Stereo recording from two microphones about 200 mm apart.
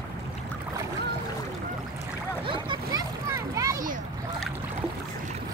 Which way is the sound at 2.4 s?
25° right (ahead or behind).